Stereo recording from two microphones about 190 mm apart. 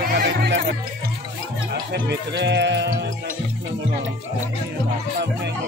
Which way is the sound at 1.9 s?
60° right (ahead or behind).